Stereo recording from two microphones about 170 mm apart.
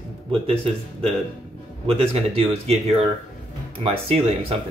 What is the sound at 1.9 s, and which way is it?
Speech, 35° right (ahead or behind).